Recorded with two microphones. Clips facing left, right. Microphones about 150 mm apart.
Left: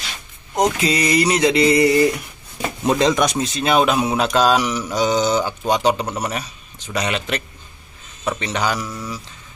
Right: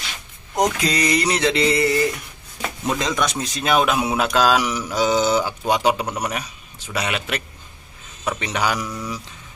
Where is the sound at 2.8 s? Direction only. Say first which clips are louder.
Left 7 dB; 30° left (ahead or behind).